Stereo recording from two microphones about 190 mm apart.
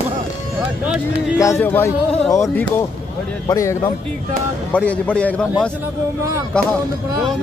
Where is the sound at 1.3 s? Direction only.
15° left (ahead or behind).